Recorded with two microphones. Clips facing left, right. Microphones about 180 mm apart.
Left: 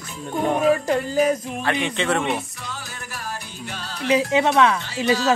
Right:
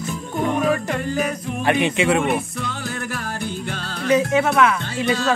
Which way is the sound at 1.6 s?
15° right (ahead or behind).